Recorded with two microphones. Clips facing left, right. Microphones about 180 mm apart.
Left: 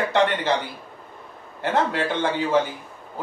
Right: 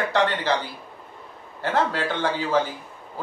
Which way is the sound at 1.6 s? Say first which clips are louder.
Left 1 dB; 20° left (ahead or behind).